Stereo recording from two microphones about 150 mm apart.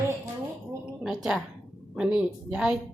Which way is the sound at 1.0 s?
5° right (ahead or behind).